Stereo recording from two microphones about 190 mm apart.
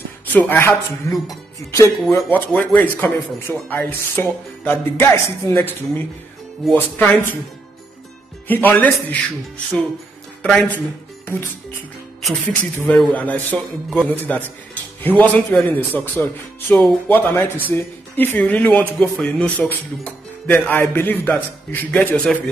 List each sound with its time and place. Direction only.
0.3 s a man's voice: 10° left (ahead or behind)
8.5 s a man's voice: 10° left (ahead or behind)
10.4 s a man's voice: 5° left (ahead or behind)
12.8 s a man's voice: 5° left (ahead or behind)